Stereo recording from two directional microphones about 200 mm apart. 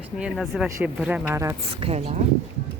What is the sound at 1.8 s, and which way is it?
Speech, 30° right (ahead or behind).